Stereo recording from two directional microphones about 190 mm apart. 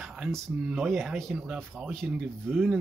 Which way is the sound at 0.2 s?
Centre (ahead or behind).